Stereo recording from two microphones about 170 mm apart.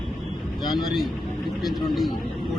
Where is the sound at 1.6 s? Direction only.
Centre (ahead or behind).